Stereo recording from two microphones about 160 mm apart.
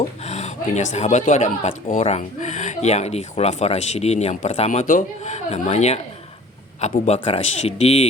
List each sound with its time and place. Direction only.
0.3 s speech: 45° left (ahead or behind)
7.0 s speech: 35° left (ahead or behind)